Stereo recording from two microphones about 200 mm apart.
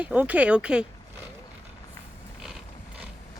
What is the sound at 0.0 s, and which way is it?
Speech, 5° right (ahead or behind).